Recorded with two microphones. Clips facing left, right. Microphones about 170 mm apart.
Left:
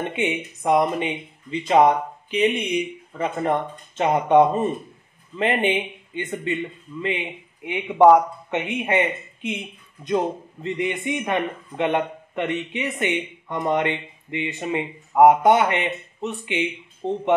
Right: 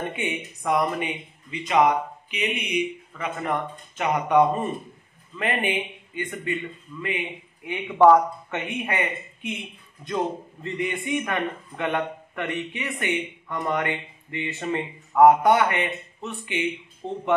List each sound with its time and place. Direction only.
0.1 s speech: 20° left (ahead or behind)